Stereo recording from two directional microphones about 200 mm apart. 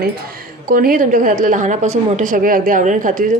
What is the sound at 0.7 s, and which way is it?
A woman's voice, 45° right (ahead or behind).